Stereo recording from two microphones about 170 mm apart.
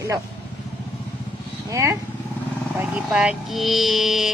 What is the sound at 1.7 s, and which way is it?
Speech, 15° right (ahead or behind).